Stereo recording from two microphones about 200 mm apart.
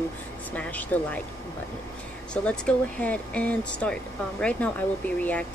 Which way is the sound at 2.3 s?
5° left (ahead or behind).